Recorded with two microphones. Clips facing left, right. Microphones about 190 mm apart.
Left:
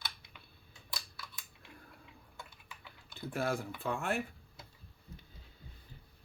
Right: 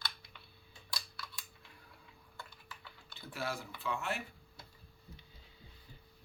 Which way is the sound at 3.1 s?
50° left (ahead or behind).